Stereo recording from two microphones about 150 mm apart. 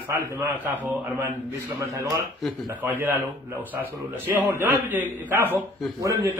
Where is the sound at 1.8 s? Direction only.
15° right (ahead or behind).